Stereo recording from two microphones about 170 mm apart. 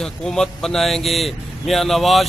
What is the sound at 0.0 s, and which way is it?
A man's voice, 5° left (ahead or behind).